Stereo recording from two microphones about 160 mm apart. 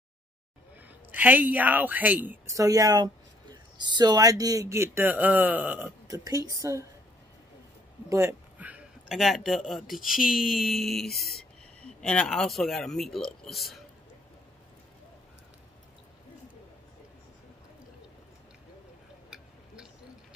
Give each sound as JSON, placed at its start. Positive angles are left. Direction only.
{"t": 1.1, "sound": "a woman's voice", "side_deg": -10}
{"t": 6.0, "sound": "a woman's voice", "side_deg": -20}
{"t": 8.1, "sound": "speech", "side_deg": -15}
{"t": 19.3, "sound": "tick-tock", "side_deg": -5}